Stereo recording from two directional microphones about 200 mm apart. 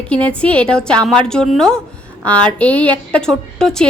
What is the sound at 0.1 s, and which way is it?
Speech, 5° left (ahead or behind).